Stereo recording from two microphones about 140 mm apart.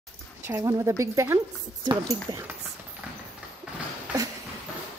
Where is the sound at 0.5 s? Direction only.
20° right (ahead or behind).